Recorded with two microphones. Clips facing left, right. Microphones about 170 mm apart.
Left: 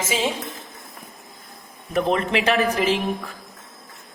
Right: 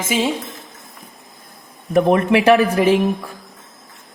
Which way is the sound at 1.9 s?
60° right (ahead or behind).